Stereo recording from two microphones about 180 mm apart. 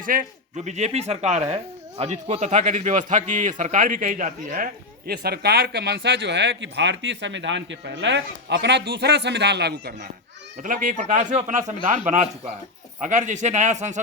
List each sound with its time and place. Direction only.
0.0 s a man's voice: 50° right (ahead or behind); by 10.1 s 65° right (ahead or behind)
10.6 s speech: 45° right (ahead or behind)